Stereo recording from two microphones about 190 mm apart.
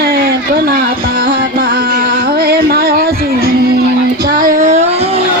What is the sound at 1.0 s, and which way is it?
Music, 50° right (ahead or behind).